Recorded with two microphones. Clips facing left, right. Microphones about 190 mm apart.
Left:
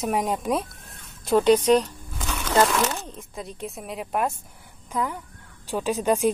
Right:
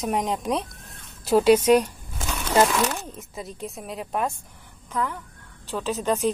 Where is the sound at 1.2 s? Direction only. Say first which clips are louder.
Right 1 dB; 5° right (ahead or behind).